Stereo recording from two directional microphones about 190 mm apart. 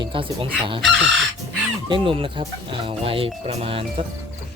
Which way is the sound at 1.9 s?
25° right (ahead or behind).